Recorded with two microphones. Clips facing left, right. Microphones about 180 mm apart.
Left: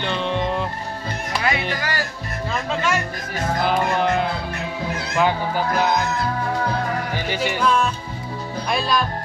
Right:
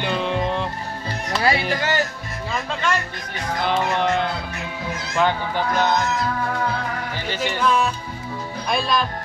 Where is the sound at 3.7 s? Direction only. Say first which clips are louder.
Right 1 dB; 5° left (ahead or behind).